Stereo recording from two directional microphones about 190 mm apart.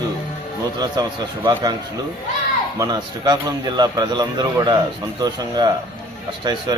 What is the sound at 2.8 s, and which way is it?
Speech, 20° right (ahead or behind).